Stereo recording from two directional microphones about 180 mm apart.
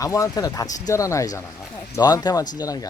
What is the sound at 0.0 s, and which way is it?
Speech, 20° left (ahead or behind).